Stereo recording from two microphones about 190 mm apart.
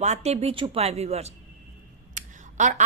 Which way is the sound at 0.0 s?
35° right (ahead or behind).